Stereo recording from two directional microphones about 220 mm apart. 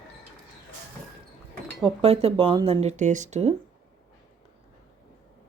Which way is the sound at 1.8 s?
25° right (ahead or behind).